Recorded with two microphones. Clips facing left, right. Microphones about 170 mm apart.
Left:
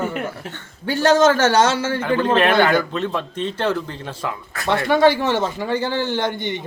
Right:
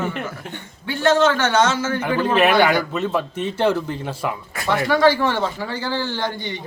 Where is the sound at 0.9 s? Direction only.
40° left (ahead or behind).